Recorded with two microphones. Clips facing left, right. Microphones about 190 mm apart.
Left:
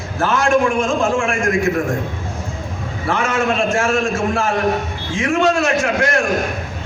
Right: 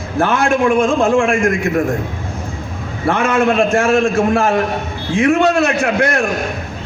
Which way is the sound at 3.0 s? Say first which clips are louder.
Right 5 dB; 60° right (ahead or behind).